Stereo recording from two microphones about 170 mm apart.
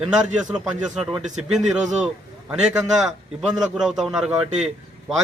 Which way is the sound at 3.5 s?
5° right (ahead or behind).